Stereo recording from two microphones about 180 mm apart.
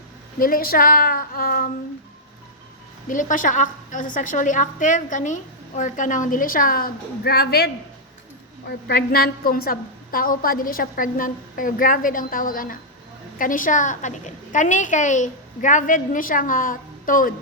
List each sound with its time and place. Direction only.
0.3 s a woman's voice: 50° left (ahead or behind)
3.1 s a woman's voice: 45° left (ahead or behind); by 7.7 s 60° left (ahead or behind)
8.9 s a woman's voice: 60° left (ahead or behind)